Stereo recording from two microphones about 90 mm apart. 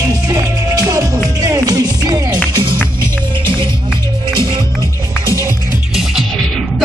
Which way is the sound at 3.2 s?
60° right (ahead or behind).